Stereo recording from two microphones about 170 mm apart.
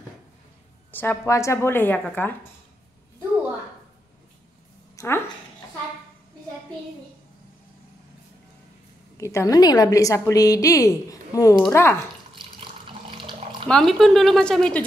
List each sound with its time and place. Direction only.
0.9 s a woman's voice: 15° left (ahead or behind)
4.9 s a sound: 15° left (ahead or behind)
9.1 s a woman's voice: 15° left (ahead or behind)
12.4 s water: 30° right (ahead or behind)
13.7 s speech: centre (ahead or behind)